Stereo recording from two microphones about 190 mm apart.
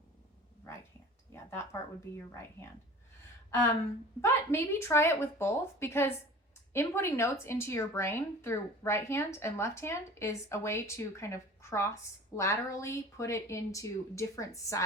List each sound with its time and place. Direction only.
1.3 s speech: 15° left (ahead or behind)
4.2 s speech: 15° left (ahead or behind)